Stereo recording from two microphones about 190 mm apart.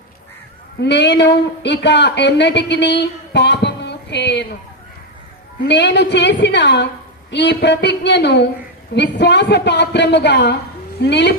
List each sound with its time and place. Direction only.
0.8 s speech: 65° left (ahead or behind)
5.6 s speech: 65° left (ahead or behind)